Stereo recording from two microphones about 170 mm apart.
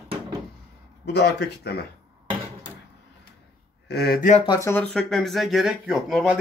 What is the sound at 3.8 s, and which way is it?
Speech, 70° left (ahead or behind).